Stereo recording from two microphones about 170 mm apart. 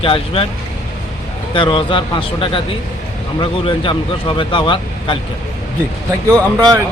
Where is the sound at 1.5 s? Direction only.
30° left (ahead or behind).